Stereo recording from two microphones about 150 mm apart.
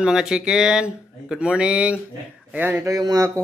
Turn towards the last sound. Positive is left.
turn(degrees=-25)  # may be behind; listen again after turning